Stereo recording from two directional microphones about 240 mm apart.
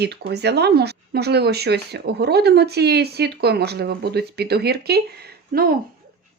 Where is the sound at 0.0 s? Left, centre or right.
Right.